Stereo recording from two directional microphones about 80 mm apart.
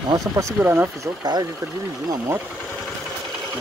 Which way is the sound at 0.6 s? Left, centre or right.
Right.